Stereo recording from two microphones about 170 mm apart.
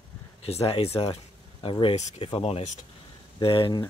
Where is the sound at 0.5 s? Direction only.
35° left (ahead or behind).